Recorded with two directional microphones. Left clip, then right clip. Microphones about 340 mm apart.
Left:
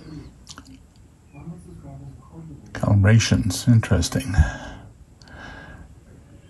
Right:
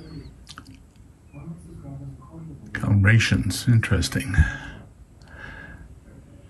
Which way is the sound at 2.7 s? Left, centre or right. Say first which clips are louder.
Even; centre.